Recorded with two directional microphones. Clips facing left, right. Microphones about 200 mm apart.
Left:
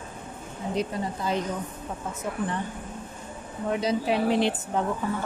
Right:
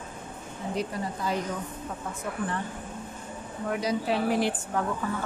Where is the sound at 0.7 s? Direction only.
20° left (ahead or behind).